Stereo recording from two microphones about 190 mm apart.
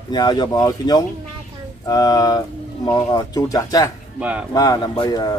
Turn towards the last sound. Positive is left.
turn(degrees=20)  # may be behind; listen again after turning